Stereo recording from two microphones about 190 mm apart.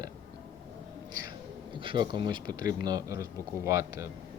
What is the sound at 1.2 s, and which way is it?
Speech, 25° right (ahead or behind).